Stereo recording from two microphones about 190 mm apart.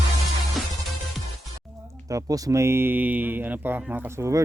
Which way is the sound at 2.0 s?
20° right (ahead or behind).